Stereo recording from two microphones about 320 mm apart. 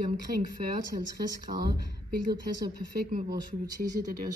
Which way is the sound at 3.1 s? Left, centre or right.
Right.